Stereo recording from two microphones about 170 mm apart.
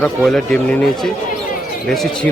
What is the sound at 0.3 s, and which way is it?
Speech, 5° left (ahead or behind).